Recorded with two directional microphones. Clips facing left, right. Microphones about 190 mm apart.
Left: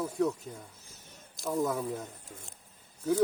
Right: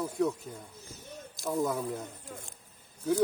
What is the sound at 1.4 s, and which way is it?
Speech, centre (ahead or behind).